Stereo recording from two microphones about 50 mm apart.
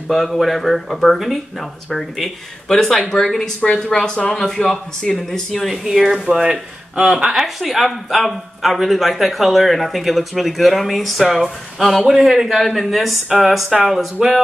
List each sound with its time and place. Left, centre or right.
0.1 s speech: centre
5.5 s speech: centre